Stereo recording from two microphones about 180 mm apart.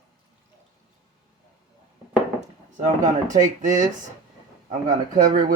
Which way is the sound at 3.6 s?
45° right (ahead or behind).